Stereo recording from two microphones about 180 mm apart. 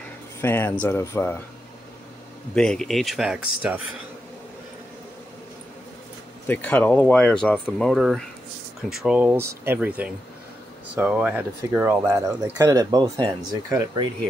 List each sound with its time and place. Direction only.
0.4 s speech: 15° left (ahead or behind)
2.5 s speech: 5° left (ahead or behind)
6.4 s speech: 10° left (ahead or behind); by 14.0 s 20° right (ahead or behind)